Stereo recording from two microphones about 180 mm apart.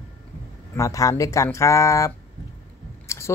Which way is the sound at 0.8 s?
20° left (ahead or behind).